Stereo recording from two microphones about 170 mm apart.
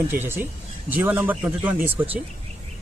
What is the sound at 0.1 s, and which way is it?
Speech, 15° right (ahead or behind).